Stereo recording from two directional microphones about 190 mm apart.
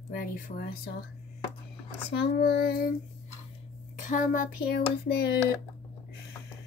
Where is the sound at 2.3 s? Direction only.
55° left (ahead or behind).